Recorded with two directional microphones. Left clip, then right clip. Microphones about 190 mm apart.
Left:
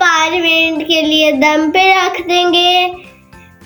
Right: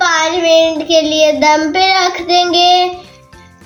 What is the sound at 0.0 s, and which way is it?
Child singing, 60° left (ahead or behind).